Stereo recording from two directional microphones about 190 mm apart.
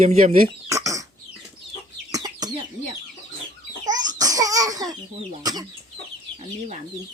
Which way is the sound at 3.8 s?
20° right (ahead or behind).